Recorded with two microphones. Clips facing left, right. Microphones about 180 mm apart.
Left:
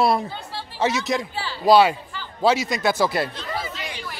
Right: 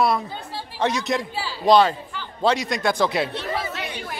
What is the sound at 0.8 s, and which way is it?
Speech, 5° left (ahead or behind).